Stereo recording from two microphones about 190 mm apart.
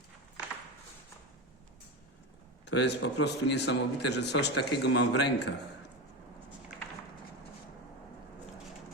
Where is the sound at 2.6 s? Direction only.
65° left (ahead or behind).